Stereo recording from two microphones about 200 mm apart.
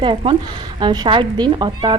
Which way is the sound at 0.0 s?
25° right (ahead or behind).